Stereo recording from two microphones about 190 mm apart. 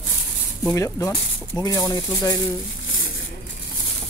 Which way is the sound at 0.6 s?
15° left (ahead or behind).